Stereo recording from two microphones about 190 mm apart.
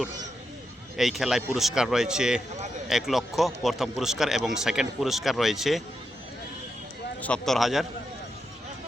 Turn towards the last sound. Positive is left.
turn(degrees=0)  # may be behind; listen again after turning